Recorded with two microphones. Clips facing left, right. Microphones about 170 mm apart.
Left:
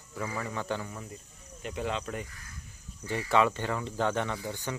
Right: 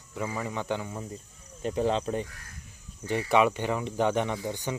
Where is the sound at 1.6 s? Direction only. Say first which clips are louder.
Right 7 dB; 35° right (ahead or behind).